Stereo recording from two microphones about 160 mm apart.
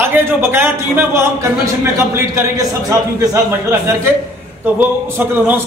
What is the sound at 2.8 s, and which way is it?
A man's voice, 20° right (ahead or behind).